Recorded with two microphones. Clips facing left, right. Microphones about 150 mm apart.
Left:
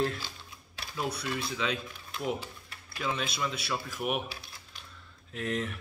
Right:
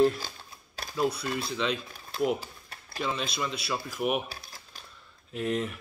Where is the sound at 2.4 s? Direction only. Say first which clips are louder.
Even; 40° right (ahead or behind).